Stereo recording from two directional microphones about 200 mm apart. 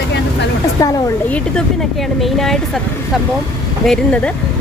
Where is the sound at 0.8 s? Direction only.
15° left (ahead or behind).